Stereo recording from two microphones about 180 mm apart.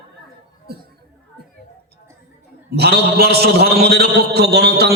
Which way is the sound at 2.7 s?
65° right (ahead or behind).